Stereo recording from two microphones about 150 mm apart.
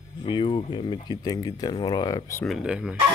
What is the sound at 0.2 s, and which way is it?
Speech, 30° left (ahead or behind).